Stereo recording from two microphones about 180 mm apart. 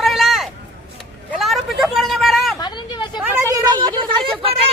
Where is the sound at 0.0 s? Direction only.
Centre (ahead or behind).